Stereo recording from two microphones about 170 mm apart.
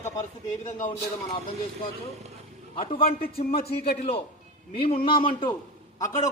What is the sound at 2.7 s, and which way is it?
Speech, 35° left (ahead or behind).